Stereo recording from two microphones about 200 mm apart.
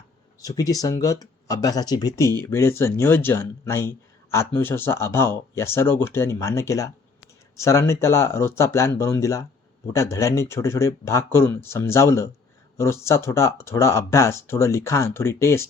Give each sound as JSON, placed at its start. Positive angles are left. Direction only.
{"t": 0.4, "sound": "speech", "side_deg": 20}